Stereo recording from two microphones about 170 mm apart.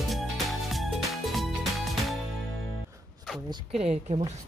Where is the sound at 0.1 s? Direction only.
Centre (ahead or behind).